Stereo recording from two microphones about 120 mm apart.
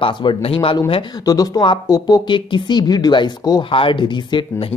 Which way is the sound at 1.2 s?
30° left (ahead or behind).